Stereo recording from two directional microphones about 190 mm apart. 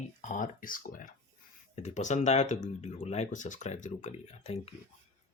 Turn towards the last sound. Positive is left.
turn(degrees=35)  # may be behind; listen again after turning